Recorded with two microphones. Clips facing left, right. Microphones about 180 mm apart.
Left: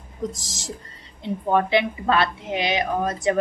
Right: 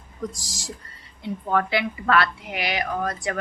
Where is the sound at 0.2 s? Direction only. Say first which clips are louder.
Left 3 dB; 20° left (ahead or behind).